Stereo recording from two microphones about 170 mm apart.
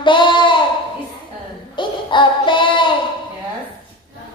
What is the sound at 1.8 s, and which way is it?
Child singing, 30° left (ahead or behind).